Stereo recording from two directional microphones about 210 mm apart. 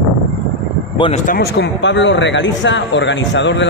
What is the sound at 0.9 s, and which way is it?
Speech, 25° left (ahead or behind).